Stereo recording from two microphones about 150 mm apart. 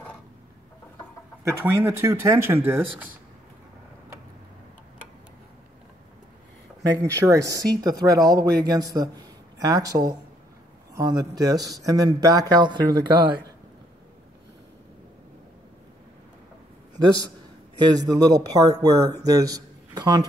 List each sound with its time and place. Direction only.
1.4 s speech: 15° right (ahead or behind)
7.2 s speech: 20° right (ahead or behind)
17.9 s speech: 25° right (ahead or behind)